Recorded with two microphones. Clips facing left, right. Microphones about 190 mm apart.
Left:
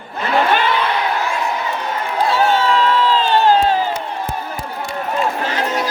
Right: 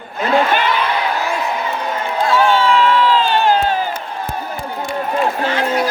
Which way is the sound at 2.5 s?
40° left (ahead or behind).